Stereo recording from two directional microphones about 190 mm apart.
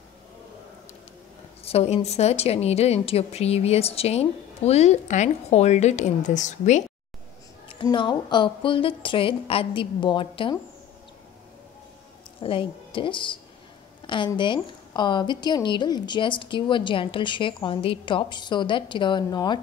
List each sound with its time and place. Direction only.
1.6 s a sound: 35° left (ahead or behind)
2.0 s speech: 35° left (ahead or behind)
7.6 s a woman's voice: 25° left (ahead or behind)
12.4 s a woman's voice: 30° left (ahead or behind)